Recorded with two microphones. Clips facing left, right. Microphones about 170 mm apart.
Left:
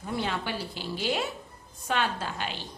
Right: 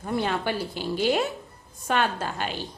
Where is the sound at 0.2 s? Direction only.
50° right (ahead or behind).